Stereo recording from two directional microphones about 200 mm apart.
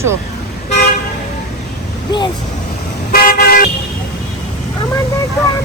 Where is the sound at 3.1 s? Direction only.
50° left (ahead or behind).